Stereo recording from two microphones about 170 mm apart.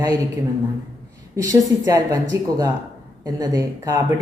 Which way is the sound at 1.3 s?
20° right (ahead or behind).